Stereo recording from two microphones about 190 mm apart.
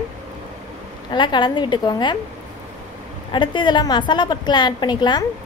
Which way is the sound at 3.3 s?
25° left (ahead or behind).